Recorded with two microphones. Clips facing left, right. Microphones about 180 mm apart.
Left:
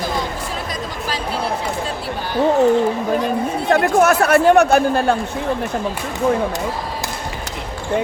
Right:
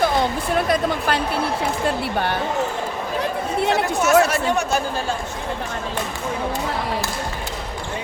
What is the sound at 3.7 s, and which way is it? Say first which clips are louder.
Speech: left 6 dB; 60° left (ahead or behind).